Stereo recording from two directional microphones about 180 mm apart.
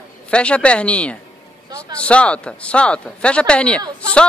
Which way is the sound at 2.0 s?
5° left (ahead or behind).